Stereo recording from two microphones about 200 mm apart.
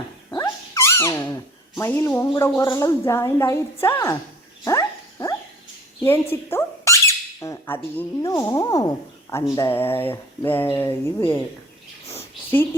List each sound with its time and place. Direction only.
0.3 s a sound: 15° left (ahead or behind)
2.6 s speech: 15° left (ahead or behind)
4.6 s dog: 15° left (ahead or behind)
6.0 s squeak: 10° left (ahead or behind)
7.9 s speech: 15° left (ahead or behind)